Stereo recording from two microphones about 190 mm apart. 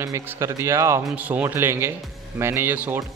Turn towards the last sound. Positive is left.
turn(degrees=-10)  # may be behind; listen again after turning